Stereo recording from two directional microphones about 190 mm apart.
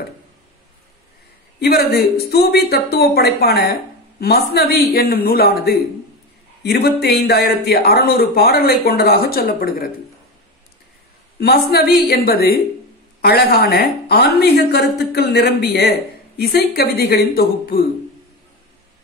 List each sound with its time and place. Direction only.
1.6 s a woman's voice: 55° left (ahead or behind)
11.3 s a man's voice: 55° left (ahead or behind)